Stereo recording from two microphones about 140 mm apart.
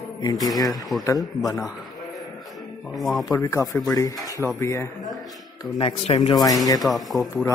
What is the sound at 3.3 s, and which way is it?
Speech, 20° left (ahead or behind).